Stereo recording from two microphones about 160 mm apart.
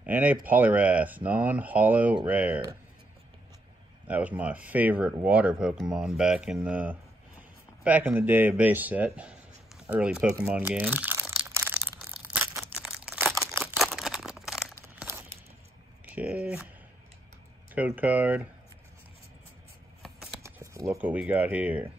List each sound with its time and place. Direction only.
0.0 s speech: 10° right (ahead or behind)
4.1 s speech: 10° right (ahead or behind)
10.4 s a sound: 10° right (ahead or behind)
12.7 s crumpling: 5° right (ahead or behind)
13.4 s camera: centre (ahead or behind)
13.7 s crumpling: centre (ahead or behind)
16.1 s speech: 10° right (ahead or behind)
17.7 s speech: 10° right (ahead or behind)
20.0 s a sound: centre (ahead or behind)
20.4 s speech: 20° right (ahead or behind)